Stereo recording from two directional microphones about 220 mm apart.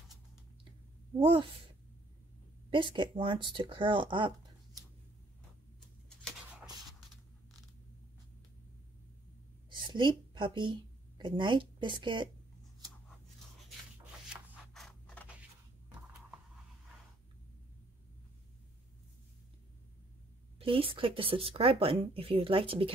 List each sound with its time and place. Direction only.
1.2 s speech: 20° right (ahead or behind)
2.7 s speech: 20° right (ahead or behind)
9.8 s speech: 20° right (ahead or behind)
14.3 s scissors: centre (ahead or behind)
20.5 s speech: 25° right (ahead or behind)